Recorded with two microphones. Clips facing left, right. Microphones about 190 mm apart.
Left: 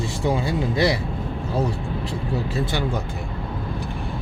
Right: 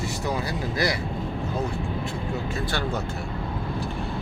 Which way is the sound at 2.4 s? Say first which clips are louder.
Left 4 dB; 30° left (ahead or behind).